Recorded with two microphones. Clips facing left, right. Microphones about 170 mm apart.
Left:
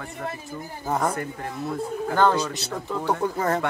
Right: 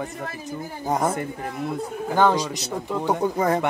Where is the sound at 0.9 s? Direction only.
20° right (ahead or behind).